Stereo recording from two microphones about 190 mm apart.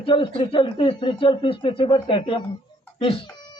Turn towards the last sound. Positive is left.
turn(degrees=20)  # may be behind; listen again after turning